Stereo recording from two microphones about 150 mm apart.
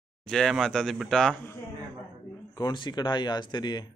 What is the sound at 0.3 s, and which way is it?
Speech, centre (ahead or behind).